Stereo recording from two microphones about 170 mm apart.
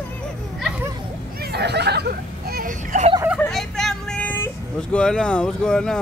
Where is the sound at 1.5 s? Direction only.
80° right; by 3.1 s 55° right (ahead or behind).